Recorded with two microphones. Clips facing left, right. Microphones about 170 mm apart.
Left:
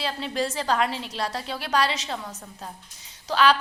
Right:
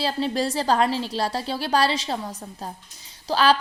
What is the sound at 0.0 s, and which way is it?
A woman's voice, 35° right (ahead or behind).